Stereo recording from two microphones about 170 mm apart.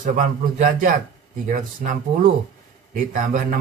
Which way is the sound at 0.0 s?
50° right (ahead or behind).